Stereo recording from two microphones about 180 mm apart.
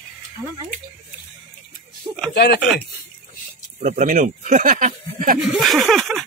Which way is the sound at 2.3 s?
65° left (ahead or behind).